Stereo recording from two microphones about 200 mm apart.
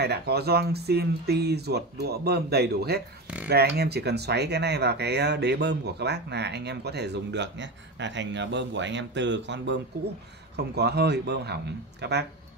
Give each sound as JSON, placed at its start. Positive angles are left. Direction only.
{"t": 0.0, "sound": "speech", "side_deg": -55}